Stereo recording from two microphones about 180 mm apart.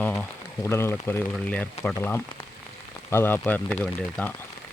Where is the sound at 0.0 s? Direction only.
10° left (ahead or behind).